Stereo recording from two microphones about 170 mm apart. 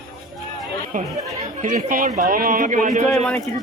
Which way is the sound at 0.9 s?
50° right (ahead or behind).